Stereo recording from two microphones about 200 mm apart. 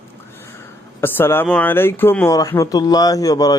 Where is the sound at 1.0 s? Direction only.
10° left (ahead or behind).